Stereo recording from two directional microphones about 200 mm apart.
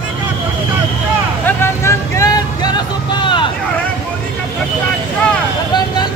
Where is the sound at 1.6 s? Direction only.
15° left (ahead or behind).